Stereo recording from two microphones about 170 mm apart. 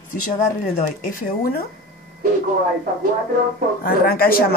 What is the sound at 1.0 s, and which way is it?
Speech, 55° left (ahead or behind).